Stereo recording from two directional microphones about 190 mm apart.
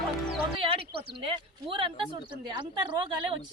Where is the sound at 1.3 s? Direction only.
25° right (ahead or behind).